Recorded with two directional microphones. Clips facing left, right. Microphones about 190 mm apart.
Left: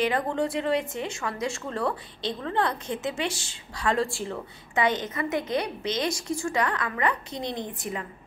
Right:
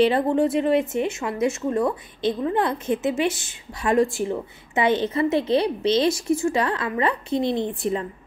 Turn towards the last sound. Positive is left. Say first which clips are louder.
# right 9 dB
turn(degrees=-25)  # may be behind; listen again after turning